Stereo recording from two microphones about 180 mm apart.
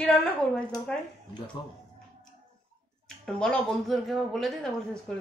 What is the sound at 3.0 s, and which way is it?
Speech, 5° left (ahead or behind).